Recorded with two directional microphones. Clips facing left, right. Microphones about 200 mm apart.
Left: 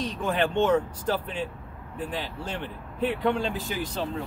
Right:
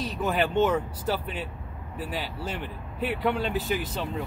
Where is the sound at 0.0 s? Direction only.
5° right (ahead or behind).